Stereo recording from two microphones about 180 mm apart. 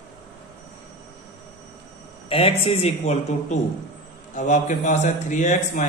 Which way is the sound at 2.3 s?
35° left (ahead or behind).